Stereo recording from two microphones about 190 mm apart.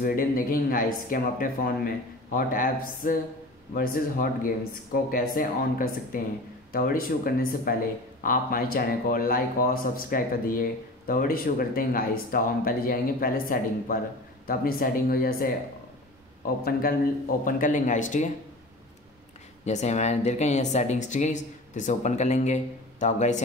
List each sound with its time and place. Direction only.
0.0 s speech: 50° left (ahead or behind)
19.6 s speech: 35° left (ahead or behind)